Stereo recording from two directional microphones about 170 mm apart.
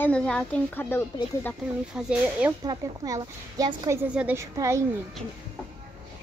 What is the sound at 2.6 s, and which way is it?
A woman's voice, 25° right (ahead or behind).